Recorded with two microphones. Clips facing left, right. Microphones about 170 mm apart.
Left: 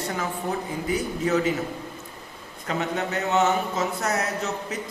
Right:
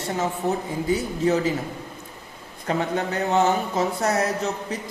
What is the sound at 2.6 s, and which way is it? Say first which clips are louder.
Speech: right 3 dB; 30° right (ahead or behind).